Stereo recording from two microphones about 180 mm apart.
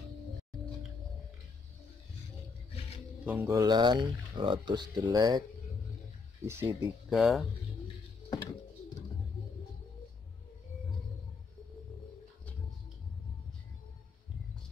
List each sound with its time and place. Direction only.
3.3 s speech: 10° right (ahead or behind)
6.4 s speech: 15° right (ahead or behind)
7.1 s speech: centre (ahead or behind)